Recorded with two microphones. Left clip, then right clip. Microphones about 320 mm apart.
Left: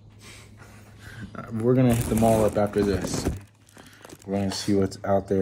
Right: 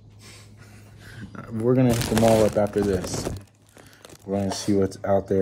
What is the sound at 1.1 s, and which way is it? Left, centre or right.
Speech, centre.